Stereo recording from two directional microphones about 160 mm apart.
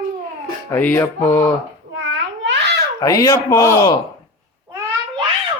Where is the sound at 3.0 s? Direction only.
20° left (ahead or behind).